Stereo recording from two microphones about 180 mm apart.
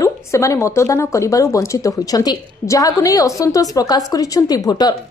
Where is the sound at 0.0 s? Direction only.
15° left (ahead or behind).